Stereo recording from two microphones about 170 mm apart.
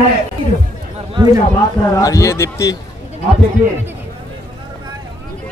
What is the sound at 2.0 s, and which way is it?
Speech, 20° left (ahead or behind).